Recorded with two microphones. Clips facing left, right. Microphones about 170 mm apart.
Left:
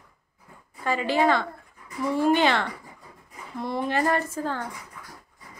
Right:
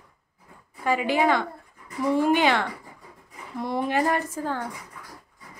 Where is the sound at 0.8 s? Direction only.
10° right (ahead or behind).